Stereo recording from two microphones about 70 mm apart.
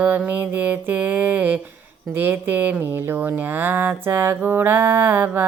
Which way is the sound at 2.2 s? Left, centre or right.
Right.